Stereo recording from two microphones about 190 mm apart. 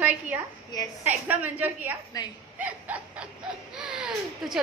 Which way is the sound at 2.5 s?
10° right (ahead or behind).